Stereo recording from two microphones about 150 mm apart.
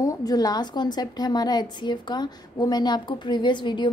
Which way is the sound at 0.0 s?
25° left (ahead or behind).